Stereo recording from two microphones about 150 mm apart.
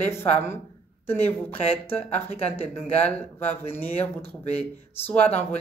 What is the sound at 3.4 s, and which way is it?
Speech, 15° left (ahead or behind).